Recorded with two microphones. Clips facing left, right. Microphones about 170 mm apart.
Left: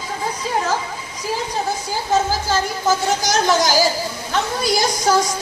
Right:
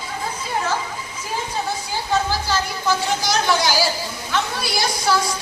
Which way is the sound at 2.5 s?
45° left (ahead or behind).